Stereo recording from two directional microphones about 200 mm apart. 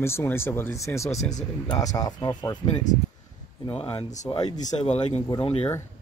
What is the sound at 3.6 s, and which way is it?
Speech, 30° left (ahead or behind).